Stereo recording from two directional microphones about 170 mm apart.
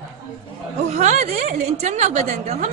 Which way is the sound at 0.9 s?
40° right (ahead or behind).